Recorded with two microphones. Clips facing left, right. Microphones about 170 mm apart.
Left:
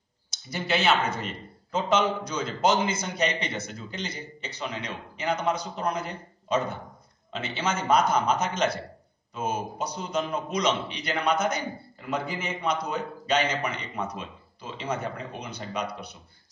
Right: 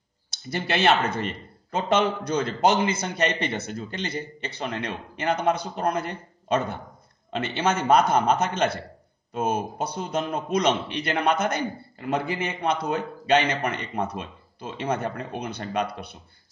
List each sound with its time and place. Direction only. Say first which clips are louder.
0.3 s speech: right 1 dB; 60° right (ahead or behind)